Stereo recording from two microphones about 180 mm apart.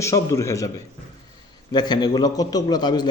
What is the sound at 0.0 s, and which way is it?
Speech, 15° left (ahead or behind).